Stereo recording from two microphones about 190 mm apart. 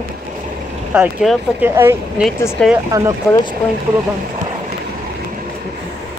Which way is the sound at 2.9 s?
15° right (ahead or behind).